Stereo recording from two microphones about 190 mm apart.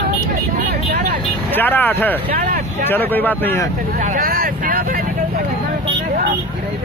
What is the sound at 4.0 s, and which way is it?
Vehicle, 50° right (ahead or behind).